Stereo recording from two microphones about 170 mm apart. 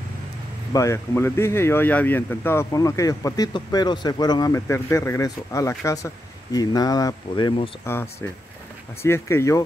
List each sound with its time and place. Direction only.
0.7 s speech: 15° left (ahead or behind)
7.8 s speech: 15° left (ahead or behind)